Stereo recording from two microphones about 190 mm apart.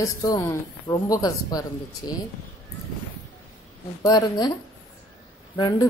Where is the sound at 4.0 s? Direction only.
20° left (ahead or behind).